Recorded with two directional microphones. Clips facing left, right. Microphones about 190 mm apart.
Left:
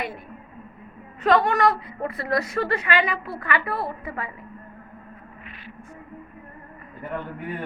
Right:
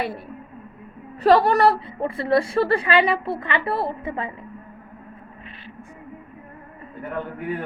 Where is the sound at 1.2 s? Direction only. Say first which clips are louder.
Right 4 dB; 35° right (ahead or behind).